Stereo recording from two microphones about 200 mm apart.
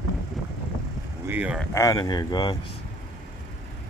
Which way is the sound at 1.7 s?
15° left (ahead or behind).